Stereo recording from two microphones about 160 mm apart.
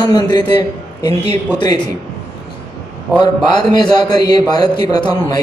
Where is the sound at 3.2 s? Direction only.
25° left (ahead or behind).